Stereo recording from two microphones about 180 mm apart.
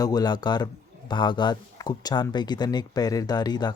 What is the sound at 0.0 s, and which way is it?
A man's voice, 20° left (ahead or behind).